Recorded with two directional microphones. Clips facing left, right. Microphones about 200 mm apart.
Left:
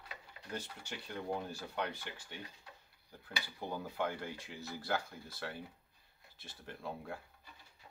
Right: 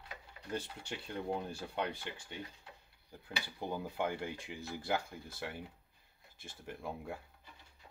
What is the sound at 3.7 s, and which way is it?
Speech, 15° right (ahead or behind).